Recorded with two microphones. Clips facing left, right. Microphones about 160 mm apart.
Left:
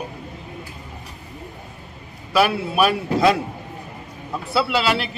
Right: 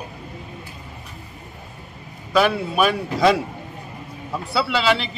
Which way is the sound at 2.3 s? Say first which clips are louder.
Even; 5° left (ahead or behind).